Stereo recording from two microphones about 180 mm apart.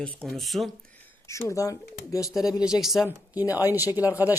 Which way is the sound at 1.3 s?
15° left (ahead or behind).